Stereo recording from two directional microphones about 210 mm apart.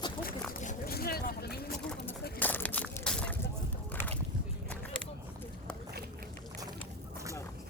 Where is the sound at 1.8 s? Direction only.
10° left (ahead or behind).